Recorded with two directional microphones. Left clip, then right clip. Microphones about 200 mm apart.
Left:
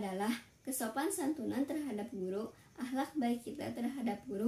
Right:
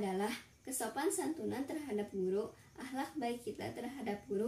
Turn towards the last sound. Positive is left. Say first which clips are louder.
# left 3 dB
turn(degrees=15)  # may be behind; listen again after turning